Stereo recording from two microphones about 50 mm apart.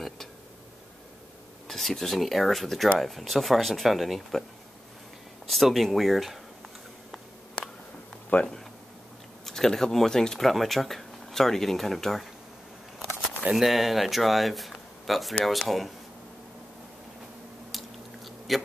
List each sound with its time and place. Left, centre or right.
1.7 s speech: centre
5.5 s speech: centre
8.3 s speech: left
9.5 s speech: centre
13.6 s speech: centre
17.6 s biting: centre